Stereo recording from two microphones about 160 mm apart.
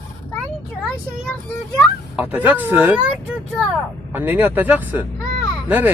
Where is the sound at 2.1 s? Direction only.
10° right (ahead or behind).